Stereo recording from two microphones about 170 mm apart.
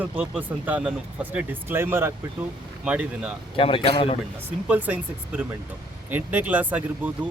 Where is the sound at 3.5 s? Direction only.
30° left (ahead or behind).